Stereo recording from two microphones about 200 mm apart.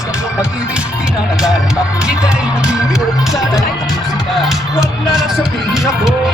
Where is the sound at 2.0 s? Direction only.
5° right (ahead or behind).